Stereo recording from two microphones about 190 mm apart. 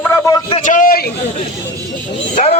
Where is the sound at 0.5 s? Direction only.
40° left (ahead or behind).